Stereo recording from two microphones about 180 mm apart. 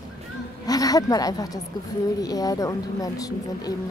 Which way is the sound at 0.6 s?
20° left (ahead or behind).